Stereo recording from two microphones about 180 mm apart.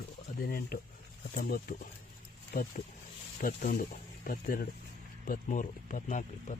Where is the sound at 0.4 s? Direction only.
55° left (ahead or behind).